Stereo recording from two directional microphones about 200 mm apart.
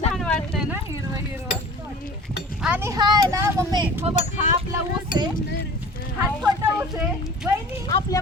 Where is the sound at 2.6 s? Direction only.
10° right (ahead or behind).